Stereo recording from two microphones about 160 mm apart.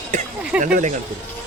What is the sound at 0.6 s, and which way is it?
Speech, 50° right (ahead or behind).